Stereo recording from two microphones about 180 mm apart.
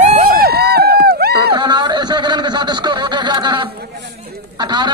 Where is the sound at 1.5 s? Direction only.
25° right (ahead or behind).